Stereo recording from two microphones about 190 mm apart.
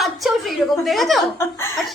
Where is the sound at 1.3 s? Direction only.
15° left (ahead or behind).